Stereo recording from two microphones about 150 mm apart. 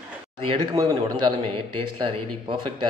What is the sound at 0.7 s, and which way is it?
A woman's voice, 25° right (ahead or behind).